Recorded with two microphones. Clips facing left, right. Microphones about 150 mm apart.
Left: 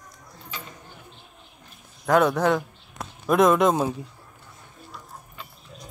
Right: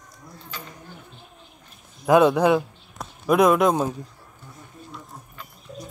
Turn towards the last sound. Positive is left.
turn(degrees=5)  # may be behind; listen again after turning